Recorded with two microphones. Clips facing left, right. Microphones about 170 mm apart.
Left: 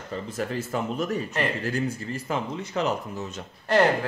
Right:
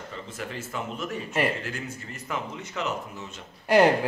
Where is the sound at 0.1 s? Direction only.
40° left (ahead or behind).